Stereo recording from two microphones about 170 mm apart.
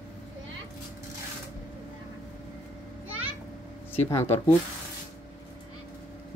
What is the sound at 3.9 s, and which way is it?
Speech, 15° left (ahead or behind).